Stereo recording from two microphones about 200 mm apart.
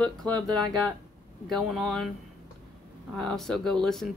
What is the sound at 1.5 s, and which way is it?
Speech, centre (ahead or behind).